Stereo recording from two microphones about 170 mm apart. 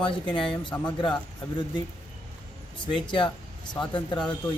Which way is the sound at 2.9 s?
30° left (ahead or behind).